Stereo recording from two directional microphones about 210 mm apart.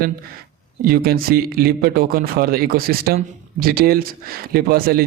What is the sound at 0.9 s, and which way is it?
Speech, 45° right (ahead or behind).